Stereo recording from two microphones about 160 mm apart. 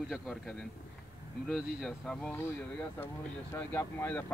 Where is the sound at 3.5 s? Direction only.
10° left (ahead or behind).